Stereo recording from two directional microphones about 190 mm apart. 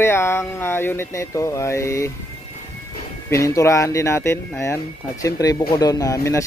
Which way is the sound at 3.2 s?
15° left (ahead or behind).